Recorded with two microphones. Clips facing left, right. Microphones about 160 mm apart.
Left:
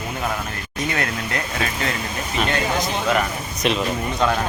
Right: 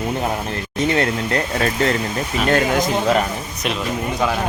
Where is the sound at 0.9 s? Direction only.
30° right (ahead or behind).